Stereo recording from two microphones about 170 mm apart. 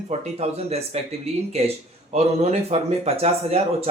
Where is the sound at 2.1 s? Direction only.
40° right (ahead or behind).